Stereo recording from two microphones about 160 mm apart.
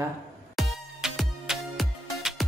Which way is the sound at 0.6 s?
Centre (ahead or behind).